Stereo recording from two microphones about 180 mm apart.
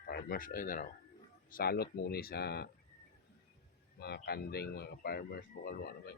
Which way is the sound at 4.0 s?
60° left (ahead or behind).